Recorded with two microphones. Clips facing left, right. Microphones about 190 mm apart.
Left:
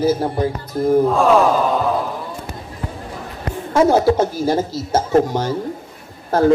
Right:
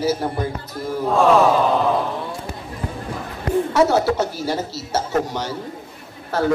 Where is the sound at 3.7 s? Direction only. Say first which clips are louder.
Left 5 dB; 50° left (ahead or behind).